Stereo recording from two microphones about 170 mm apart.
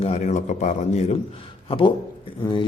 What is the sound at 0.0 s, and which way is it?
A man's voice, 40° left (ahead or behind).